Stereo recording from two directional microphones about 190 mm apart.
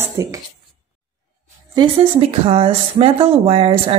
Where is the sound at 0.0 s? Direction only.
15° right (ahead or behind).